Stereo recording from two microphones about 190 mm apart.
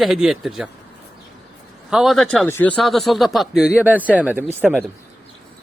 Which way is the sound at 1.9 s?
Centre (ahead or behind).